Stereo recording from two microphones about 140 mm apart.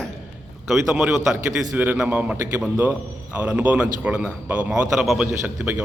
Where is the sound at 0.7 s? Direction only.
5° right (ahead or behind).